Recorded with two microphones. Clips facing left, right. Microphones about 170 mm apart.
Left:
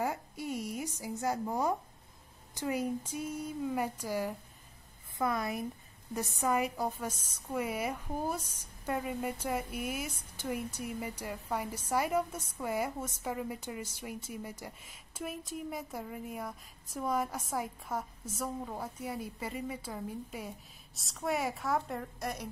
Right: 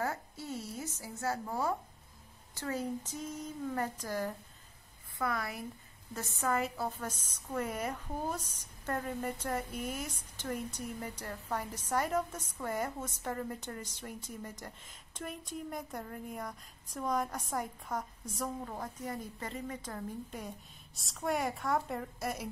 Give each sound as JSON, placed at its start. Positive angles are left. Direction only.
{"t": 0.0, "sound": "a woman's voice", "side_deg": 15}